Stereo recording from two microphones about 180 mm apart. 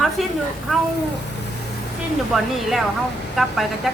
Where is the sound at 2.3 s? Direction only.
Centre (ahead or behind).